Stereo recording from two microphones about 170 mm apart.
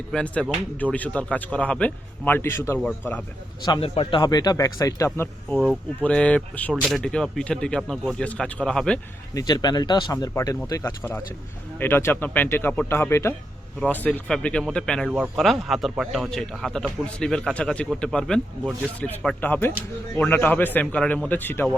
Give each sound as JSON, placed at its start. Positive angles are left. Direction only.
{"t": 0.1, "sound": "speech", "side_deg": 5}
{"t": 3.7, "sound": "speech", "side_deg": 35}
{"t": 9.3, "sound": "speech", "side_deg": 25}